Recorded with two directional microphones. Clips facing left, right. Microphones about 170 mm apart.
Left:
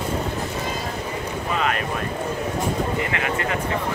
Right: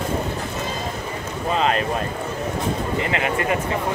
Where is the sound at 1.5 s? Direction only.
30° right (ahead or behind).